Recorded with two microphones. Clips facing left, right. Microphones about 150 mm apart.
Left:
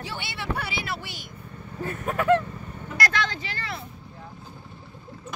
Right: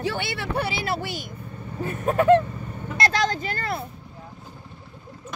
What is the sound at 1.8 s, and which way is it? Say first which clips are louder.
Vehicle: right 5 dB; 25° right (ahead or behind).